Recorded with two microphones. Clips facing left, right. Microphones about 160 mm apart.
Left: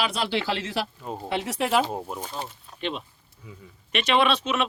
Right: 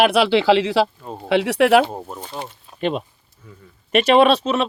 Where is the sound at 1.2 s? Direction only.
75° right (ahead or behind).